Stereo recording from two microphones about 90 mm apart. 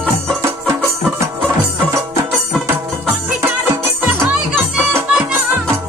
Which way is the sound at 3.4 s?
25° right (ahead or behind).